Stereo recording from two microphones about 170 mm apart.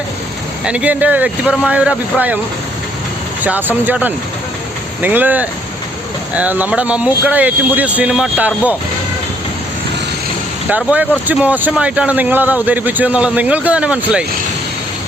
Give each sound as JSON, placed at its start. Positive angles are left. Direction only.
{"t": 0.6, "sound": "speech", "side_deg": -5}
{"t": 3.4, "sound": "speech", "side_deg": -10}
{"t": 10.7, "sound": "speech", "side_deg": -10}